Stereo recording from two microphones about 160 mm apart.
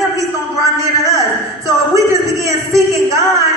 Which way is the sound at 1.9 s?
20° right (ahead or behind).